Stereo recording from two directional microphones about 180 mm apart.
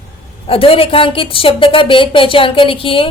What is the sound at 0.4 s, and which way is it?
A woman's voice, 30° left (ahead or behind).